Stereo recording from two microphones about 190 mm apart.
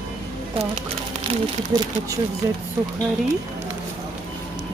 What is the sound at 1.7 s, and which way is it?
Speech, 20° right (ahead or behind).